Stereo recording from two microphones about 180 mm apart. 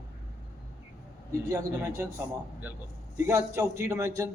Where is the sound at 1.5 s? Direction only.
15° right (ahead or behind).